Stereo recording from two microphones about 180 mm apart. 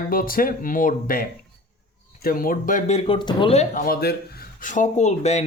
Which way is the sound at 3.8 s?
55° left (ahead or behind).